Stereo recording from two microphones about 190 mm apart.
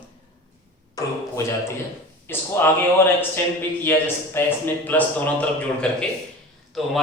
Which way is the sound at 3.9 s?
10° left (ahead or behind).